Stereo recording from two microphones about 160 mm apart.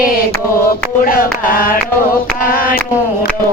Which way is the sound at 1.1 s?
60° left (ahead or behind).